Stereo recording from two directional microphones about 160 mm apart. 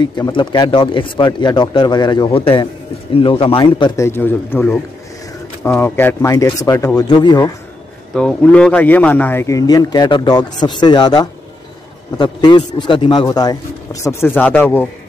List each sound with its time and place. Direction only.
0.0 s a man's voice: 25° left (ahead or behind)
3.9 s a man's voice: 15° left (ahead or behind)
8.1 s a man's voice: 5° left (ahead or behind)